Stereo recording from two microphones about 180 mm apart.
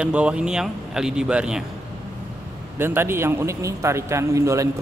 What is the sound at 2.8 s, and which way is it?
A man's voice, 15° right (ahead or behind).